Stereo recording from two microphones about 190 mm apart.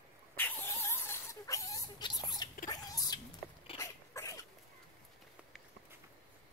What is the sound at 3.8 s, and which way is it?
Dog, 15° left (ahead or behind).